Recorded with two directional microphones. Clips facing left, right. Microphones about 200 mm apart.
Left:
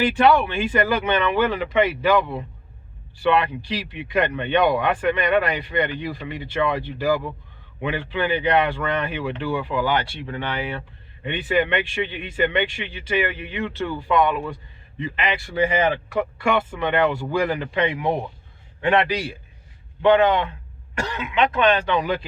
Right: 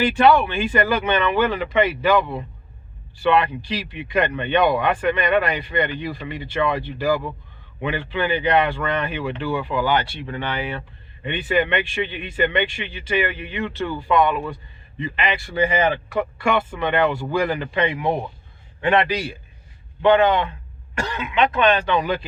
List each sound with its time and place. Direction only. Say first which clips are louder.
0.0 s speech: right 1 dB; 10° left (ahead or behind)
3.2 s speech: right 1 dB; 10° left (ahead or behind)